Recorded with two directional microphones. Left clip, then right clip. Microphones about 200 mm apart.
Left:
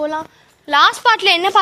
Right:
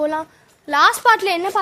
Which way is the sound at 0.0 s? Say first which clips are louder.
Even; 15° right (ahead or behind).